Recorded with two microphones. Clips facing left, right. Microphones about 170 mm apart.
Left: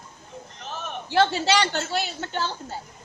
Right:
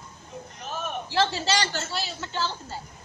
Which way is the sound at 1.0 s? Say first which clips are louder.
Left 5 dB; 60° left (ahead or behind).